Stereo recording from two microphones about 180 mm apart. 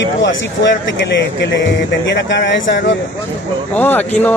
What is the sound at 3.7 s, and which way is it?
Speech, 10° left (ahead or behind).